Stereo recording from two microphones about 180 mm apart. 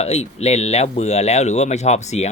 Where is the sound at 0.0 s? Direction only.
35° left (ahead or behind).